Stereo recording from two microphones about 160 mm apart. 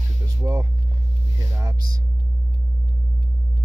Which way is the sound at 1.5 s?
20° right (ahead or behind).